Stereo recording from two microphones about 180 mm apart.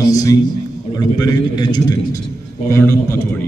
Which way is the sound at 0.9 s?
20° left (ahead or behind).